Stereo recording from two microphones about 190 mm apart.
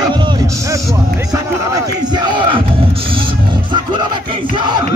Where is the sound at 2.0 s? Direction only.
25° right (ahead or behind).